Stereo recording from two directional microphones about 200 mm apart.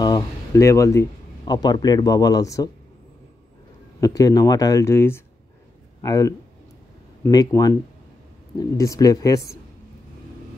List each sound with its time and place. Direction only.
0.0 s speech: 15° left (ahead or behind)
4.0 s a man's voice: 15° left (ahead or behind)